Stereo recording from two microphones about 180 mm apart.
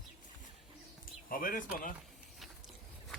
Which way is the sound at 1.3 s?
50° left (ahead or behind).